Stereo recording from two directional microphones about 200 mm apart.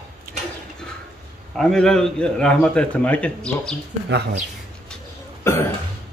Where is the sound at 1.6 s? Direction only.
Centre (ahead or behind).